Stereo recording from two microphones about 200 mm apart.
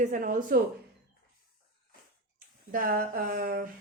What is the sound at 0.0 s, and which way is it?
Speech, 40° right (ahead or behind).